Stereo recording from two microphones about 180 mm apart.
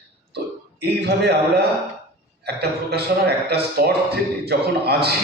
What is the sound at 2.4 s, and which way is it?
Speech, 65° right (ahead or behind).